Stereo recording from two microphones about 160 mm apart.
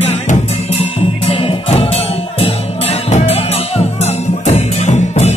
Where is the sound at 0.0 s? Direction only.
40° left (ahead or behind).